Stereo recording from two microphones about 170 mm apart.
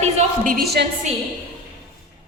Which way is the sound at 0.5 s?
70° right (ahead or behind).